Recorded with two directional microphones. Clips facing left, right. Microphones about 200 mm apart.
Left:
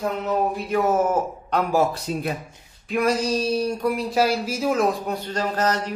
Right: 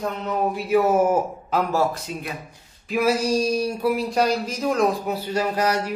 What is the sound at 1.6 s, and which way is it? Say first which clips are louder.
Speech: left 2 dB; 15° left (ahead or behind).